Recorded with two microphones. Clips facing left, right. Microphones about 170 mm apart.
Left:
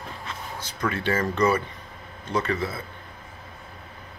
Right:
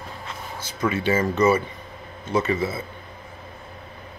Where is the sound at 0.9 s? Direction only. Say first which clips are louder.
Right 4 dB; 5° right (ahead or behind).